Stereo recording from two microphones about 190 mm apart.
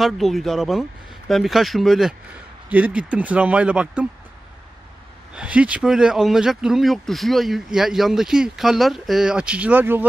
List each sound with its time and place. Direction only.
0.0 s speech: centre (ahead or behind)
5.3 s speech: 5° right (ahead or behind)